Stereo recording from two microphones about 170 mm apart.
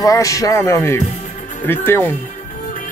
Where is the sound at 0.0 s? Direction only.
20° left (ahead or behind).